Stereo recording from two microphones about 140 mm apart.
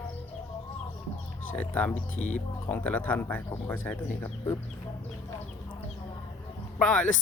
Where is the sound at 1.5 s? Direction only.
10° left (ahead or behind).